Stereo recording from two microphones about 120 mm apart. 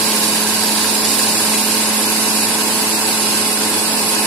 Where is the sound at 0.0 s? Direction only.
Centre (ahead or behind).